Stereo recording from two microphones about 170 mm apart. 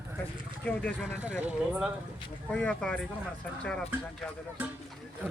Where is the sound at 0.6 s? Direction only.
10° left (ahead or behind).